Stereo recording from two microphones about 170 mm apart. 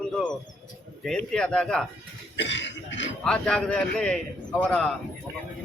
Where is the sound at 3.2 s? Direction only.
5° left (ahead or behind).